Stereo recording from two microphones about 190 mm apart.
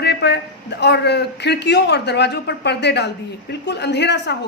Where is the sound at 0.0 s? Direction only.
60° left (ahead or behind).